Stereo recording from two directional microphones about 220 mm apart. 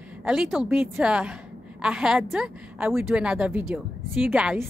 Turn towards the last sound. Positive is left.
turn(degrees=-5)  # may be behind; listen again after turning